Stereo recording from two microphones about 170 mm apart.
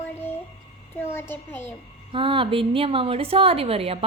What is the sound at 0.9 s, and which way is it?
Music, 15° left (ahead or behind).